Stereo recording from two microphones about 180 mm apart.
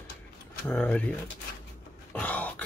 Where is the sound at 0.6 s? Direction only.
5° left (ahead or behind).